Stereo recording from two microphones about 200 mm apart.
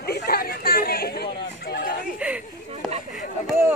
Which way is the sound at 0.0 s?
50° left (ahead or behind).